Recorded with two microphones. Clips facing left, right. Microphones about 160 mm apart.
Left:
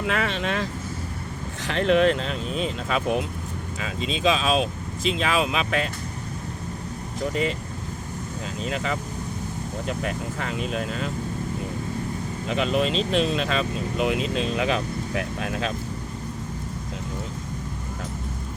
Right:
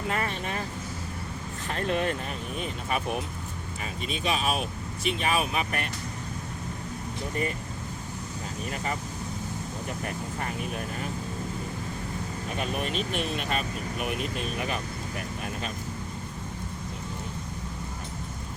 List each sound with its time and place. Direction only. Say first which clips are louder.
0.1 s speech: left 5 dB; 90° left
8.6 s speech: left 5 dB; 90° left
12.5 s speech: left 9 dB; 90° left